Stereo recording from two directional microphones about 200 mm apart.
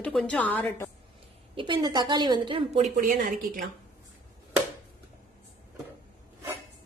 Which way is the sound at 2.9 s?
40° right (ahead or behind).